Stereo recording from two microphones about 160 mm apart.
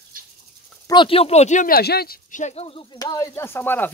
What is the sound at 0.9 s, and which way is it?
Speech, 30° left (ahead or behind).